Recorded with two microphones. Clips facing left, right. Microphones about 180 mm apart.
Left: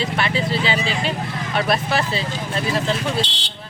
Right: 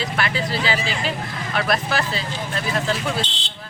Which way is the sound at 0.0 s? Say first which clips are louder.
Left 2 dB; 25° left (ahead or behind).